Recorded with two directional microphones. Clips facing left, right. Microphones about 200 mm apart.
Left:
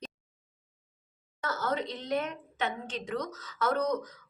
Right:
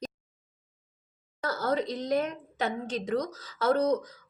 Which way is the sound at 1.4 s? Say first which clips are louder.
Right 4 dB; 35° right (ahead or behind).